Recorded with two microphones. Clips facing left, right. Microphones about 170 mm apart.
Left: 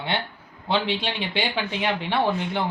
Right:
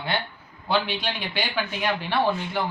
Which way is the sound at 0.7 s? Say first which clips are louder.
Left 1 dB; 25° left (ahead or behind).